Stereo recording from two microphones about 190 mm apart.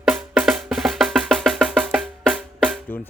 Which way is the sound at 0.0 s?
5° right (ahead or behind).